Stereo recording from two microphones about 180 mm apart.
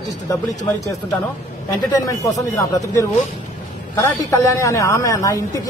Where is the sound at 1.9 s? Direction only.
20° left (ahead or behind).